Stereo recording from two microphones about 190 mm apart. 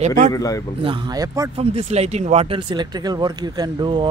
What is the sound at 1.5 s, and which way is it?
Speech, 35° right (ahead or behind).